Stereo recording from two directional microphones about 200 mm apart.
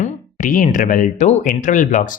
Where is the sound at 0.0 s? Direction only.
40° left (ahead or behind).